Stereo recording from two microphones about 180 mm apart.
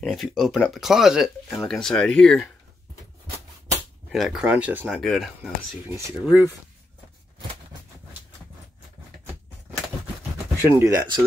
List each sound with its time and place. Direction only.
0.0 s speech: centre (ahead or behind)
4.1 s speech: centre (ahead or behind)
5.9 s speech: 15° right (ahead or behind)
10.6 s speech: 15° right (ahead or behind)